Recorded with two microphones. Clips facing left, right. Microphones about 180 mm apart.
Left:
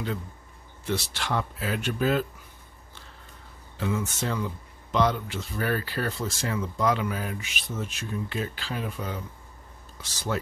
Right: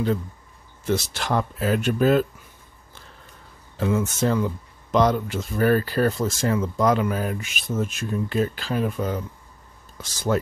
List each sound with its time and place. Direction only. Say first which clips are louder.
0.8 s speech: right 5 dB; 45° right (ahead or behind)
3.7 s speech: right 6 dB; 45° right (ahead or behind)